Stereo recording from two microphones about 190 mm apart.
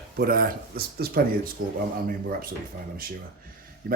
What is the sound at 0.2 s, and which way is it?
Speech, 50° right (ahead or behind).